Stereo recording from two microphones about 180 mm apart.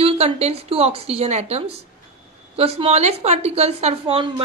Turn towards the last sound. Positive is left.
turn(degrees=-30)  # may be behind; listen again after turning